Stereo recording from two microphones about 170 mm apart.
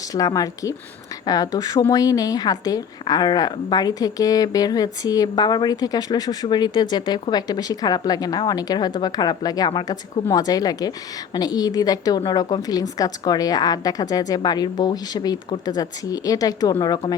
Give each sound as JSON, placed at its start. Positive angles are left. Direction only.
{"t": 0.1, "sound": "a woman's voice", "side_deg": 20}